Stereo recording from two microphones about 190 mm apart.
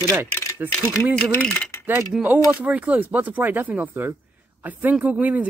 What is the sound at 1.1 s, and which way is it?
Speech, 5° left (ahead or behind).